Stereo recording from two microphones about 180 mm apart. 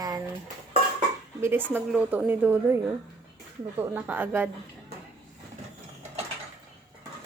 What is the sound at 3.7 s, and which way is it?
Speech, 10° right (ahead or behind).